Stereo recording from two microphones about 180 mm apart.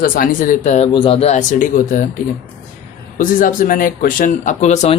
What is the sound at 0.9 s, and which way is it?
Speech, 30° left (ahead or behind).